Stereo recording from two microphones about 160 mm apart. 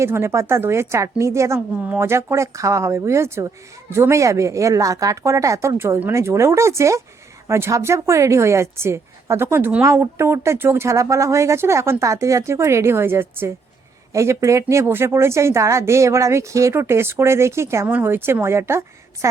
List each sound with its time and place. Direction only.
0.0 s speech: 15° right (ahead or behind)